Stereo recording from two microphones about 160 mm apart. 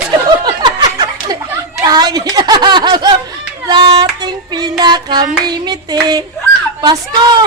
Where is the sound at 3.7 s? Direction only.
30° right (ahead or behind).